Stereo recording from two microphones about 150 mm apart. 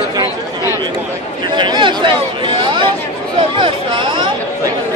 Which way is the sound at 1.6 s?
30° right (ahead or behind).